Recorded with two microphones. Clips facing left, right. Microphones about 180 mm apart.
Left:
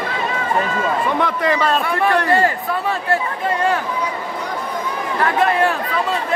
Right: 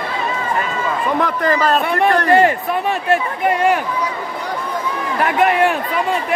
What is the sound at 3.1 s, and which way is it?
Speech, 15° right (ahead or behind).